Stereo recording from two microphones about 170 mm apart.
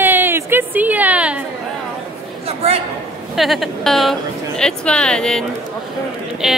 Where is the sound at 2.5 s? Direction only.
35° right (ahead or behind).